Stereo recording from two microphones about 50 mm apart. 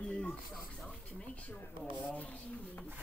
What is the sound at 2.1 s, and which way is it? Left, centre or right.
Speech, left.